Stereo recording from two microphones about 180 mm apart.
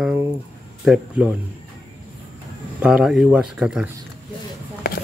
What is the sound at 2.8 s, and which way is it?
Speech, 5° right (ahead or behind).